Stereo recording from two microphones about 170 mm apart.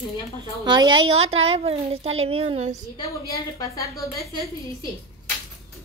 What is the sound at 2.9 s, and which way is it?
A woman's voice, 20° left (ahead or behind).